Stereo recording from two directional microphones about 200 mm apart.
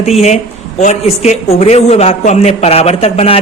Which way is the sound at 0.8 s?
35° left (ahead or behind).